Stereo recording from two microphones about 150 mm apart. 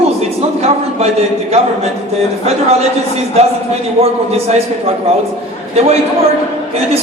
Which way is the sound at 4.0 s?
40° right (ahead or behind).